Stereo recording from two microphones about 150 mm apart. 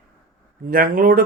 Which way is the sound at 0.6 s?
70° right (ahead or behind).